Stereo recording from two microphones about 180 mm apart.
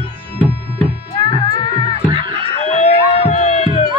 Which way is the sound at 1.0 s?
30° left (ahead or behind).